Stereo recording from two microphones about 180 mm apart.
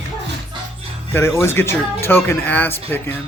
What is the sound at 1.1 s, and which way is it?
Speech, 15° left (ahead or behind).